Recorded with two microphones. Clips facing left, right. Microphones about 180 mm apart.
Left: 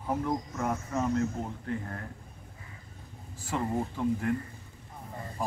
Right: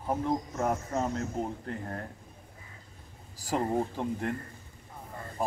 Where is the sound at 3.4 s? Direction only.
35° right (ahead or behind).